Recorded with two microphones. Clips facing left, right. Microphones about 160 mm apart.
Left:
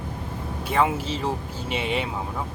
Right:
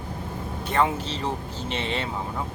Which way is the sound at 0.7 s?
5° left (ahead or behind).